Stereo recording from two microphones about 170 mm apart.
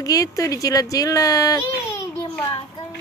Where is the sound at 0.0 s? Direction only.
20° left (ahead or behind).